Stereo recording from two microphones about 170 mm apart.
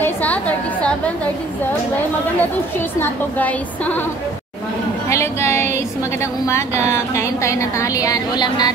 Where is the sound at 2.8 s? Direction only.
10° left (ahead or behind).